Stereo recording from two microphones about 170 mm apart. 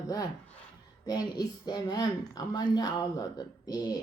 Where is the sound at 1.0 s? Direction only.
25° left (ahead or behind).